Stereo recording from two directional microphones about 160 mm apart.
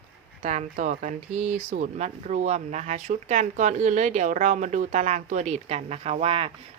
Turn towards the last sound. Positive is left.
turn(degrees=-35)  # may be behind; listen again after turning